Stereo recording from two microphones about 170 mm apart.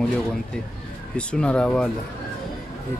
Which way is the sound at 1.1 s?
5° left (ahead or behind).